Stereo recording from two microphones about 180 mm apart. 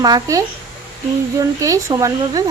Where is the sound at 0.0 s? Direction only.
20° right (ahead or behind).